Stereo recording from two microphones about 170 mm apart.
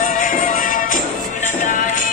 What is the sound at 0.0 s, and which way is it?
Music, 55° left (ahead or behind).